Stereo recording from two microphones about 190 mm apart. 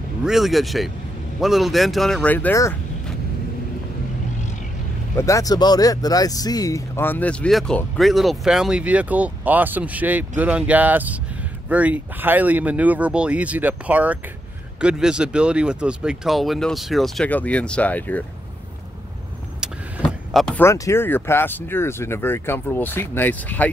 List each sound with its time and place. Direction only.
0.2 s speech: centre (ahead or behind)
5.1 s speech: 15° left (ahead or behind)
19.6 s speech: centre (ahead or behind)